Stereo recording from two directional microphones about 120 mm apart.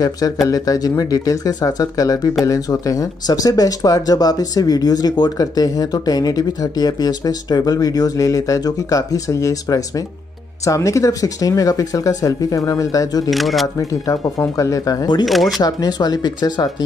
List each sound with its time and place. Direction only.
0.0 s speech: 30° left (ahead or behind)
13.3 s speech: centre (ahead or behind)
13.7 s speech: 25° left (ahead or behind)
15.2 s speech: centre (ahead or behind)
15.6 s speech: 35° left (ahead or behind)